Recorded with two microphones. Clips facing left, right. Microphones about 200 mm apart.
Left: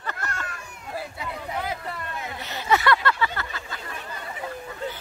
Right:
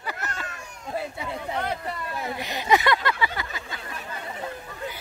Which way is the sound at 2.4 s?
15° right (ahead or behind).